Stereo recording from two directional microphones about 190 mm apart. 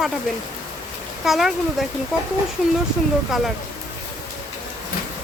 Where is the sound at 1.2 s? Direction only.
Centre (ahead or behind).